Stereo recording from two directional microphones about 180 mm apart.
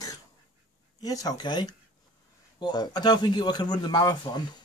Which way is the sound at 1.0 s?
20° left (ahead or behind).